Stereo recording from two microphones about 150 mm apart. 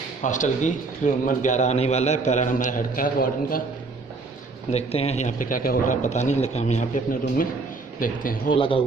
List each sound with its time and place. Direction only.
0.2 s a man's voice: 55° left (ahead or behind)
4.6 s speech: 45° left (ahead or behind); by 5.9 s 70° left (ahead or behind)
6.0 s a man's voice: 50° left (ahead or behind); by 8.5 s 70° left (ahead or behind)
8.5 s a man's voice: 35° left (ahead or behind)